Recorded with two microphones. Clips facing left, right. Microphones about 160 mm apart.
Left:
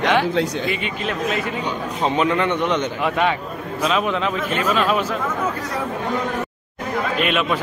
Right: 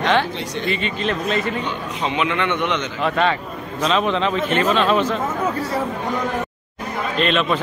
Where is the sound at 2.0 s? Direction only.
40° left (ahead or behind).